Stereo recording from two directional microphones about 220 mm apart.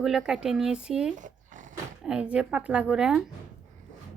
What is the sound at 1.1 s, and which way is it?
Zipper, 35° right (ahead or behind).